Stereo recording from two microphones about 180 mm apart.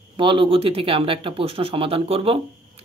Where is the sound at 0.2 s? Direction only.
30° right (ahead or behind).